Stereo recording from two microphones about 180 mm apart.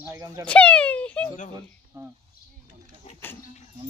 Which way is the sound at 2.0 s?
15° right (ahead or behind).